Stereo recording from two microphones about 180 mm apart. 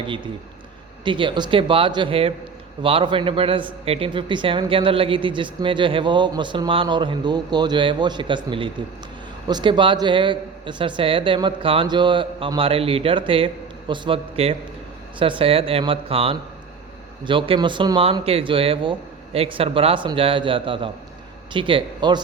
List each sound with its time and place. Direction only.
1.0 s a man's voice: 25° right (ahead or behind)